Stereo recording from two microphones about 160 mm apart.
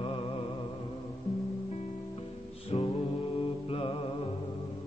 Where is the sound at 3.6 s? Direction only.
35° left (ahead or behind).